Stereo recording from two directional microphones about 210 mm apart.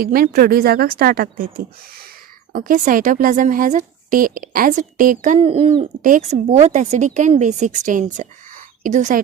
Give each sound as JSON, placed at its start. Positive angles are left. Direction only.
{"t": 0.0, "sound": "a woman's voice", "side_deg": -45}